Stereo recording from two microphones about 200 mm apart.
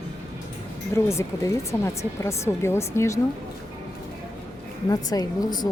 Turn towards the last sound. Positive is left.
turn(degrees=20)  # may be behind; listen again after turning